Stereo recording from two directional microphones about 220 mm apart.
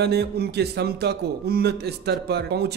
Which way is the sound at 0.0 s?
50° right (ahead or behind).